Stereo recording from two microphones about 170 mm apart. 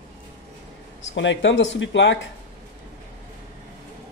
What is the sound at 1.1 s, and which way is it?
Speech, 90° left.